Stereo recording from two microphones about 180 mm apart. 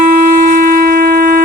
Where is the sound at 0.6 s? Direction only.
55° right (ahead or behind).